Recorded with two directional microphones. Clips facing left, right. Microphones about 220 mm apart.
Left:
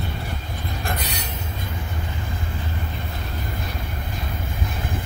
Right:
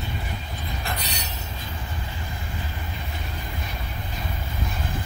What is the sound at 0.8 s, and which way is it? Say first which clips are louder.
Train: left 4 dB; 50° left (ahead or behind).